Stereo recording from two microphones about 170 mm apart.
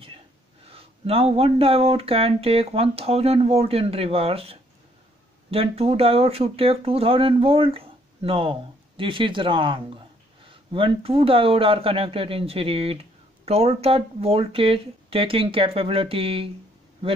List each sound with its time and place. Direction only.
0.7 s speech: 35° right (ahead or behind)